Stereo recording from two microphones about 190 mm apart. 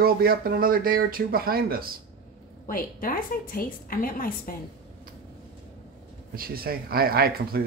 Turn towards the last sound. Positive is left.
turn(degrees=-55)  # may be behind; listen again after turning